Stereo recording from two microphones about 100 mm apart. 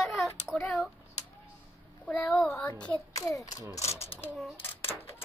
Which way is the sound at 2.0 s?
15° left (ahead or behind).